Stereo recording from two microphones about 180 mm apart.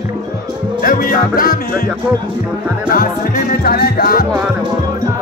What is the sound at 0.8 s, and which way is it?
Music, 55° left (ahead or behind).